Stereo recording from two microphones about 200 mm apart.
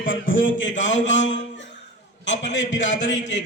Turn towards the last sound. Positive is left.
turn(degrees=65)  # may be behind; listen again after turning